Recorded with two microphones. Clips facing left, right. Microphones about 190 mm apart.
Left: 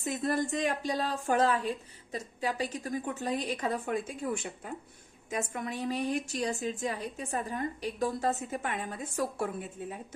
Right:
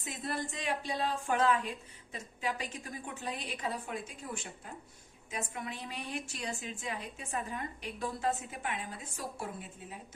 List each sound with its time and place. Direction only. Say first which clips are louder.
0.0 s a woman's voice: left 8 dB; 45° left (ahead or behind)
5.3 s a woman's voice: left 6 dB; 45° left (ahead or behind)